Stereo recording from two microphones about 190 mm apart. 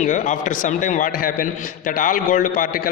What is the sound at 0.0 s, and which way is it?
A man's voice, 40° left (ahead or behind).